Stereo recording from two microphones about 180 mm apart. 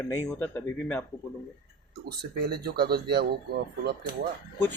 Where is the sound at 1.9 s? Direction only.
60° right (ahead or behind).